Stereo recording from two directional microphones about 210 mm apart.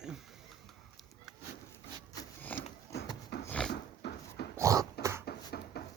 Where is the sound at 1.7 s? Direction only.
15° left (ahead or behind).